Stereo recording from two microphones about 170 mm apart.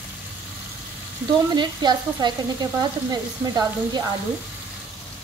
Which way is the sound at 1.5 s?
25° right (ahead or behind).